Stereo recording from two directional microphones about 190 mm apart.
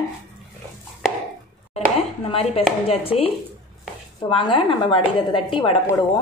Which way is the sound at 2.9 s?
30° left (ahead or behind).